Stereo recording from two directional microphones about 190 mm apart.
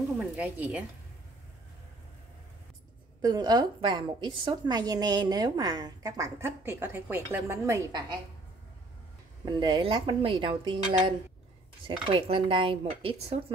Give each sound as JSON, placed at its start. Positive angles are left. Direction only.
{"t": 0.2, "sound": "a woman's voice", "side_deg": -5}
{"t": 3.2, "sound": "a woman's voice", "side_deg": -20}
{"t": 9.4, "sound": "a woman's voice", "side_deg": -25}